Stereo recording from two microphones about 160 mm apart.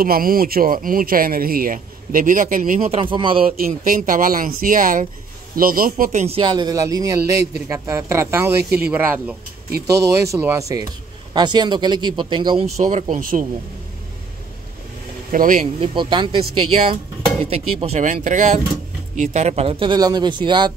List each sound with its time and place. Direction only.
0.0 s speech: 65° right (ahead or behind)
3.0 s speech: 30° right (ahead or behind)
3.9 s speech: 60° right (ahead or behind)
6.2 s speech: 35° right (ahead or behind)
12.7 s speech: 50° right (ahead or behind)
15.3 s speech: 60° right (ahead or behind)
15.8 s speech: 30° right (ahead or behind)